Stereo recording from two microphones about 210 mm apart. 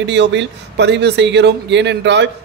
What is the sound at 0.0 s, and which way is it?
A man's voice, 55° right (ahead or behind).